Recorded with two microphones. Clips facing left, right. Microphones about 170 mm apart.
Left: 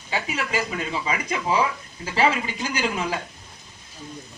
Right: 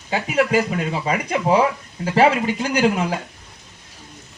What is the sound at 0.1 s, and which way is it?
Speech, 50° right (ahead or behind).